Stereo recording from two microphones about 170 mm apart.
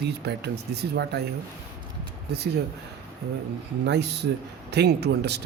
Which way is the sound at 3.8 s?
85° right.